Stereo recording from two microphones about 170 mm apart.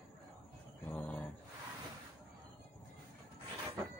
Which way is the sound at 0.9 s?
10° left (ahead or behind).